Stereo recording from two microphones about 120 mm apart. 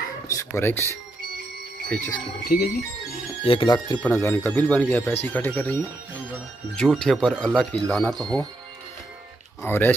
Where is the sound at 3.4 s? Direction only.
45° left (ahead or behind).